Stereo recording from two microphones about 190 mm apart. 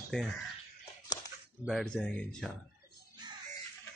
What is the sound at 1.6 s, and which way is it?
Speech, 5° left (ahead or behind).